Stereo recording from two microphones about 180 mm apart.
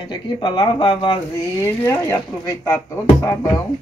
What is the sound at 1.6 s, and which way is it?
Speech, 15° left (ahead or behind).